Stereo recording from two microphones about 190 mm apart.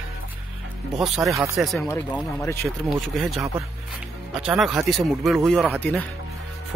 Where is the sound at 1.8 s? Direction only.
15° left (ahead or behind).